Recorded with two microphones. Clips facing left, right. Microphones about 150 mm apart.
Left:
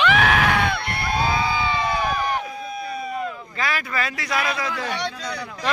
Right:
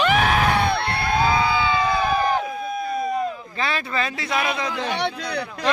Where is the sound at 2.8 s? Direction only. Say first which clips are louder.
Right 6 dB; 45° right (ahead or behind).